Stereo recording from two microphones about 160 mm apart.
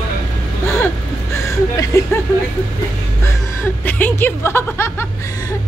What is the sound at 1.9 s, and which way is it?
Speech, 20° left (ahead or behind).